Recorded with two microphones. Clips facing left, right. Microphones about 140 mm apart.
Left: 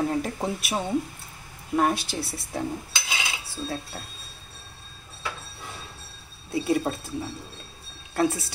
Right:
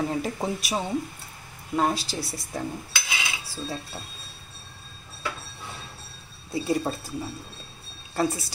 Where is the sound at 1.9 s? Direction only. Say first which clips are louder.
Left 1 dB; 60° left (ahead or behind).